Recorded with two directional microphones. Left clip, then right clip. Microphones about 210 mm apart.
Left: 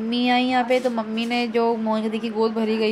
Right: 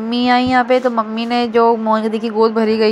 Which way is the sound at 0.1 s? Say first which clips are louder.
Right 7 dB; 15° right (ahead or behind).